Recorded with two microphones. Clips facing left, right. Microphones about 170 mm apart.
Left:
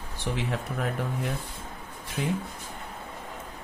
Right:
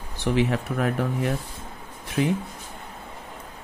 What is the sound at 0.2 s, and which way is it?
Speech, 75° right (ahead or behind).